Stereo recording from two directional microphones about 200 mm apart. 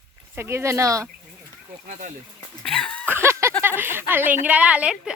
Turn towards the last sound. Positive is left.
turn(degrees=-5)  # may be behind; listen again after turning